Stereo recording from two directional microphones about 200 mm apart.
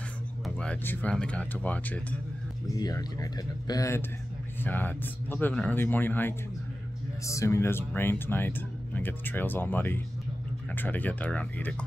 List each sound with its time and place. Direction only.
0.6 s speech: 5° left (ahead or behind)
2.7 s speech: 20° left (ahead or behind)